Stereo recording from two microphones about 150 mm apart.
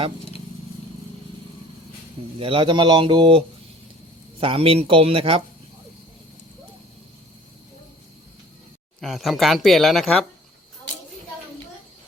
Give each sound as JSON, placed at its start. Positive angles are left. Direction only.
{"t": 2.4, "sound": "a man's voice", "side_deg": -35}
{"t": 9.0, "sound": "speech", "side_deg": 0}